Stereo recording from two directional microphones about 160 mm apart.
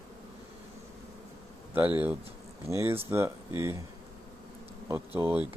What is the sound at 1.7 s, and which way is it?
Speech, 10° right (ahead or behind).